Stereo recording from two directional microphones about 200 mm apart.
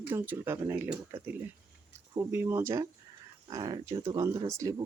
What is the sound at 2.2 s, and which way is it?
Speech, 15° right (ahead or behind).